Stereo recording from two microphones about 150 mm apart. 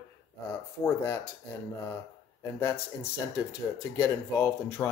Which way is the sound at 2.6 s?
15° left (ahead or behind).